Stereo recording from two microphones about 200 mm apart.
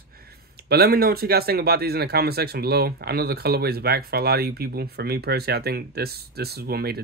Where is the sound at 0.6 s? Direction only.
50° right (ahead or behind).